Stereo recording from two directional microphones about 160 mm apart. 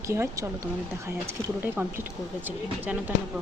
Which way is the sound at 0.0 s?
20° right (ahead or behind).